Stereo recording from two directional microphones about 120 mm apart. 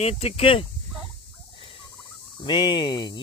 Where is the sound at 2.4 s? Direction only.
40° left (ahead or behind).